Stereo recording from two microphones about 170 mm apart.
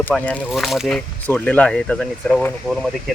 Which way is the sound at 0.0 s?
10° left (ahead or behind).